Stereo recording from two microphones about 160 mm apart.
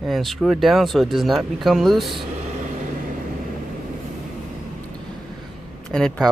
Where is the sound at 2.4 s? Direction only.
50° right (ahead or behind).